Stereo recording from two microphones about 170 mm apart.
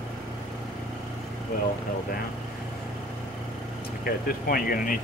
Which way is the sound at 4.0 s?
60° left (ahead or behind).